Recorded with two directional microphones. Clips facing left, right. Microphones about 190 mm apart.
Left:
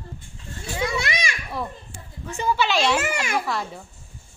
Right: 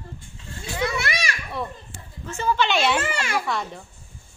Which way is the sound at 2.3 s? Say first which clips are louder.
Even; 15° left (ahead or behind).